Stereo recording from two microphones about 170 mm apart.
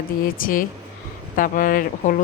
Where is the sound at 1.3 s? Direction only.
55° left (ahead or behind).